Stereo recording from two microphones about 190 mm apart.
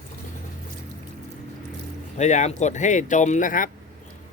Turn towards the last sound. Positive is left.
turn(degrees=45)  # may be behind; listen again after turning